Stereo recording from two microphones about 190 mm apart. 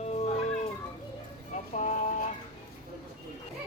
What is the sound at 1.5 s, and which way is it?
Vehicle, 40° left (ahead or behind).